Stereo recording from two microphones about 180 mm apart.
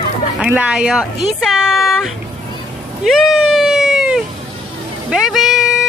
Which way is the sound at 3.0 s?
Centre (ahead or behind).